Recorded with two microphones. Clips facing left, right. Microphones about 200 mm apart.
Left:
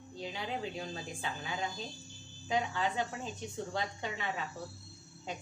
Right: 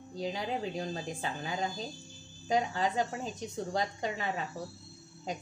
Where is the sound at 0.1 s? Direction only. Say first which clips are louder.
Right 5 dB; 40° right (ahead or behind).